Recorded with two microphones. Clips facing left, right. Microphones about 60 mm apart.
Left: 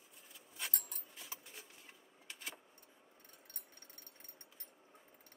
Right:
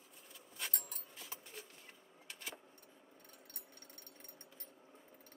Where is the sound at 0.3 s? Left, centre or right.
Centre.